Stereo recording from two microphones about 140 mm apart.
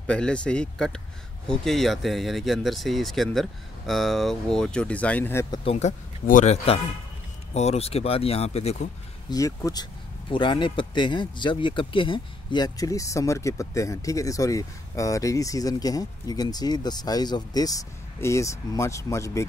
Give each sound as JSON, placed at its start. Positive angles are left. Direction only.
{"t": 0.0, "sound": "speech", "side_deg": 10}
{"t": 5.5, "sound": "speech", "side_deg": 40}
{"t": 9.3, "sound": "speech", "side_deg": 25}
{"t": 10.3, "sound": "speech", "side_deg": 35}